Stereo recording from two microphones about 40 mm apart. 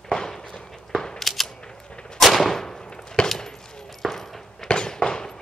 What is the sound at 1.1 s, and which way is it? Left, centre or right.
Cap gun, centre.